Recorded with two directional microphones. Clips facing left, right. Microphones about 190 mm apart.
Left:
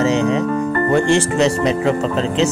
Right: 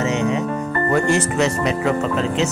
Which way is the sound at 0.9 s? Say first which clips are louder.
Left 2 dB; 30° left (ahead or behind).